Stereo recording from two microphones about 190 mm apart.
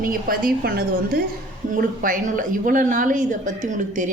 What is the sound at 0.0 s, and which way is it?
A woman's voice, 50° right (ahead or behind).